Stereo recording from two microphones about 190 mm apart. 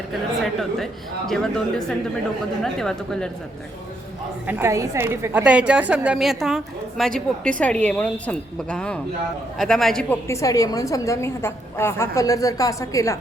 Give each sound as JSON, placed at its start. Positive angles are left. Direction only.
{"t": 1.3, "sound": "a woman's voice", "side_deg": 5}
{"t": 4.4, "sound": "a woman's voice", "side_deg": -10}